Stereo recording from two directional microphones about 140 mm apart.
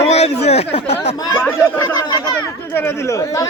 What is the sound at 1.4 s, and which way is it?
Speech, 15° left (ahead or behind).